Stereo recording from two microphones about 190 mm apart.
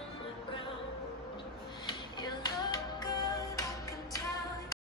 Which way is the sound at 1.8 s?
20° left (ahead or behind).